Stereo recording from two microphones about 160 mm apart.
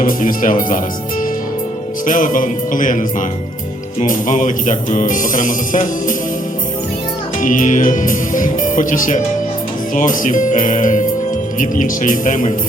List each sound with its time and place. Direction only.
0.0 s speech: 55° left (ahead or behind)
2.0 s speech: 55° left (ahead or behind)
7.4 s speech: 55° left (ahead or behind)